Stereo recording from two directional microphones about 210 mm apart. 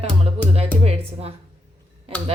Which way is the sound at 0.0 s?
30° right (ahead or behind).